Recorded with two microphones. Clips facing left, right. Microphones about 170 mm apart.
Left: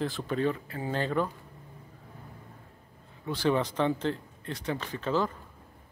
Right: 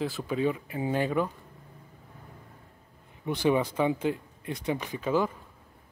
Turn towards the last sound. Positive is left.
turn(degrees=-10)  # may be behind; listen again after turning